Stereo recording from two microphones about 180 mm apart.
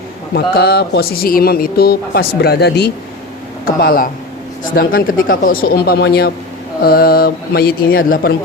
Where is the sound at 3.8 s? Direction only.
55° left (ahead or behind).